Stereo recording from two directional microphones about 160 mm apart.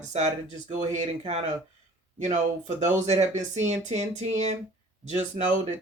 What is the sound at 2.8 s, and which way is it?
Speech, 45° right (ahead or behind).